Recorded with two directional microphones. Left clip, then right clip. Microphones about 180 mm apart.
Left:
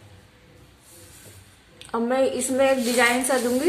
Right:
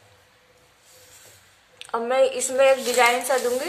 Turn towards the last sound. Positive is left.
turn(degrees=-20)  # may be behind; listen again after turning